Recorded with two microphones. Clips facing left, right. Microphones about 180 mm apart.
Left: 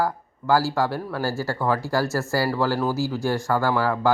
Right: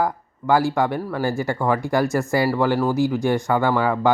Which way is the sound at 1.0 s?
Centre (ahead or behind).